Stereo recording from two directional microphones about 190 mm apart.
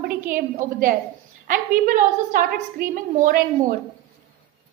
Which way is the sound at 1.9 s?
45° right (ahead or behind).